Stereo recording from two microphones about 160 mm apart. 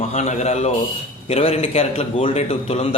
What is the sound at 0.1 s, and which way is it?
A man's voice, 45° left (ahead or behind).